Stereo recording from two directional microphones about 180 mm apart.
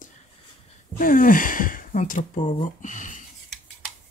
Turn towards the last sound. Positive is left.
turn(degrees=45)  # may be behind; listen again after turning